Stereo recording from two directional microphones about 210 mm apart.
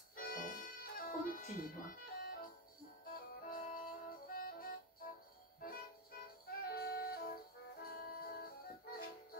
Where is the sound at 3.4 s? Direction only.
40° left (ahead or behind).